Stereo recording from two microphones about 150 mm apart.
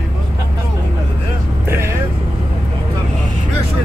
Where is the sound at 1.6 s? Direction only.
20° right (ahead or behind).